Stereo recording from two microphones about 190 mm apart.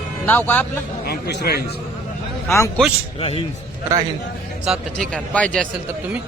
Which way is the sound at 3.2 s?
30° left (ahead or behind).